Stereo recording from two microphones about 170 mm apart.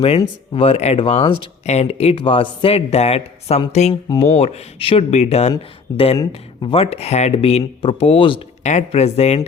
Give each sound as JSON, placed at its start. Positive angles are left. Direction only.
{"t": 0.5, "sound": "speech", "side_deg": 35}